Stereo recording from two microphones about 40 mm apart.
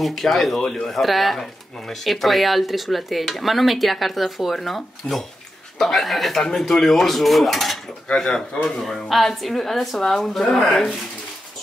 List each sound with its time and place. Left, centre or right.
0.0 s speech: centre
5.1 s speech: centre
5.8 s speech: centre
8.2 s speech: centre
9.1 s speech: centre